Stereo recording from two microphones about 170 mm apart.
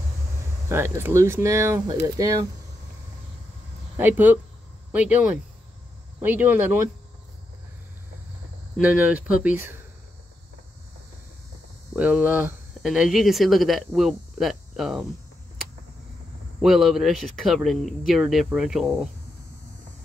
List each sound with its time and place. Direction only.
0.7 s speech: 15° right (ahead or behind)
3.9 s speech: 10° right (ahead or behind)
8.7 s speech: 10° right (ahead or behind)
11.9 s speech: 10° right (ahead or behind)
16.6 s speech: centre (ahead or behind)